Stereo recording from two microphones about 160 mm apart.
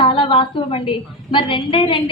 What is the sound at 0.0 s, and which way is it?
A woman's voice, 35° left (ahead or behind).